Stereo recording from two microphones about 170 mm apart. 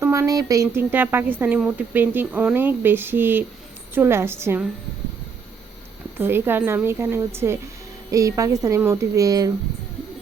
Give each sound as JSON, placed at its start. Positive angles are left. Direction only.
{"t": 0.0, "sound": "speech", "side_deg": -15}
{"t": 6.1, "sound": "a woman's voice", "side_deg": -10}